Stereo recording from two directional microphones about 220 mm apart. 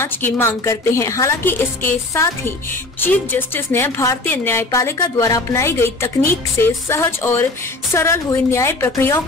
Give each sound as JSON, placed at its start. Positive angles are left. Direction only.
{"t": 0.0, "sound": "a woman's voice", "side_deg": 10}